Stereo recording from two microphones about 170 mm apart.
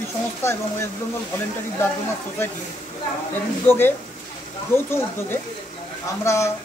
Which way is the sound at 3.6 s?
10° left (ahead or behind).